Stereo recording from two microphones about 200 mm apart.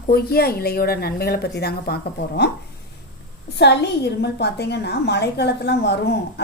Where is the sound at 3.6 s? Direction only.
55° left (ahead or behind).